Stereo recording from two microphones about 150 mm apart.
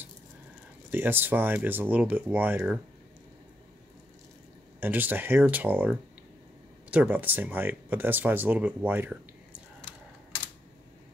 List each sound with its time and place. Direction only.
0.8 s speech: 15° right (ahead or behind)
4.7 s speech: 10° right (ahead or behind)